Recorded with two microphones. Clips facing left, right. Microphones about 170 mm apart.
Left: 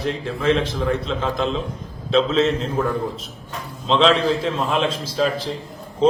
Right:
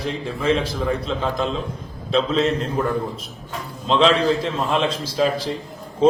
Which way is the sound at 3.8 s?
Centre (ahead or behind).